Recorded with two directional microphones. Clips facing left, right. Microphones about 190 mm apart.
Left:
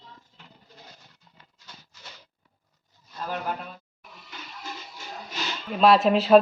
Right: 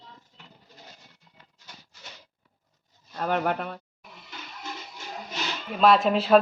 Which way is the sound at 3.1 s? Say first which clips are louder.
Right 5 dB; 65° right (ahead or behind).